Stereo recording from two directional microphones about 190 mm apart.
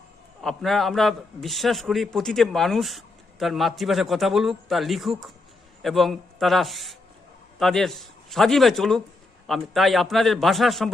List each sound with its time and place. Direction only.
0.4 s a man's voice: centre (ahead or behind)